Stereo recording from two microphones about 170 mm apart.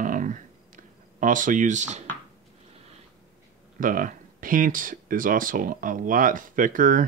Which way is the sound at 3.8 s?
55° right (ahead or behind).